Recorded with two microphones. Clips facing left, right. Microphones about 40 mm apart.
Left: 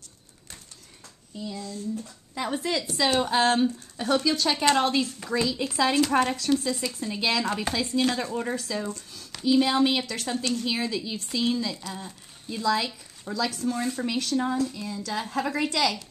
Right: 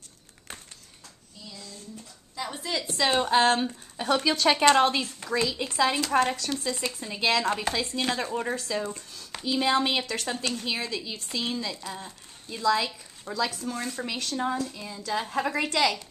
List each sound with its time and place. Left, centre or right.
2.3 s a woman's voice: left
3.2 s speech: centre
4.2 s speech: right; by 8.1 s centre
8.1 s speech: centre